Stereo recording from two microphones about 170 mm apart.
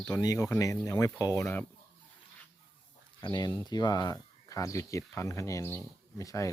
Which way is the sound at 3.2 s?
25° left (ahead or behind).